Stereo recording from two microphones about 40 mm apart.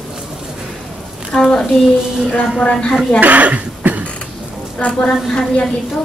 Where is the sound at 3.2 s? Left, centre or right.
Right.